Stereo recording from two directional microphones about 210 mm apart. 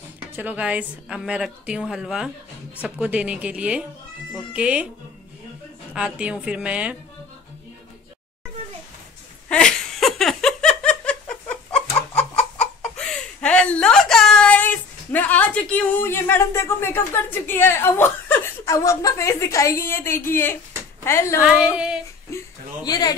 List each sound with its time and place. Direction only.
0.4 s a woman's voice: 5° right (ahead or behind)
5.9 s a woman's voice: 5° right (ahead or behind)
9.5 s a sound: 5° left (ahead or behind)
12.4 s chicken: 5° left (ahead or behind)
18.7 s a woman's voice: 15° left (ahead or behind)
21.4 s a woman's voice: 5° right (ahead or behind)
22.8 s speech: 20° left (ahead or behind)